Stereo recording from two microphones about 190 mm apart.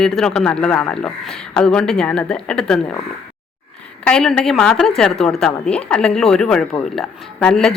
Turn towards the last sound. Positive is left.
turn(degrees=5)  # may be behind; listen again after turning